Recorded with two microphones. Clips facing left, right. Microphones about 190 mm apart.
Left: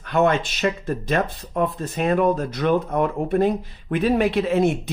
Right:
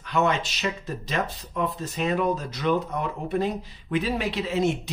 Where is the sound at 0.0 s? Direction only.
55° left (ahead or behind).